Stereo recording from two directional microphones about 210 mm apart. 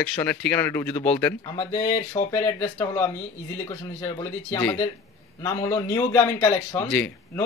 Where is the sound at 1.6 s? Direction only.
15° left (ahead or behind).